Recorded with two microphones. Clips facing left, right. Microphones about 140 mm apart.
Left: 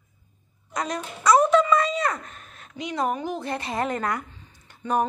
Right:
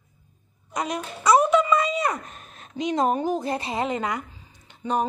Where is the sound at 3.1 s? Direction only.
35° right (ahead or behind).